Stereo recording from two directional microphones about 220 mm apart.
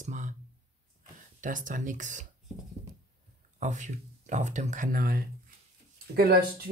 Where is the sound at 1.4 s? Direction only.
35° right (ahead or behind).